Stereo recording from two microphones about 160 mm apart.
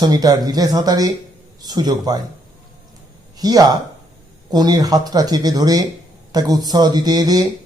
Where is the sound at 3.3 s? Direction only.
25° right (ahead or behind).